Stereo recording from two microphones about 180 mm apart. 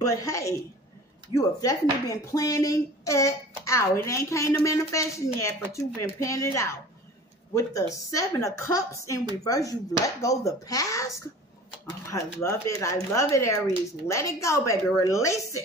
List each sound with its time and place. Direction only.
0.0 s speech: 20° left (ahead or behind)
7.9 s speech: 20° left (ahead or behind)
12.1 s speech: 15° left (ahead or behind)